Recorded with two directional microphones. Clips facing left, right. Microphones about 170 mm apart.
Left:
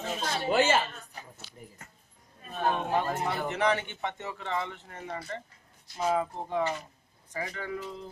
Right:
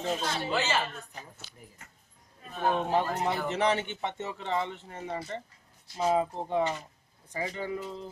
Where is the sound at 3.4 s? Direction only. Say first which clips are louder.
Left 2 dB; 25° right (ahead or behind).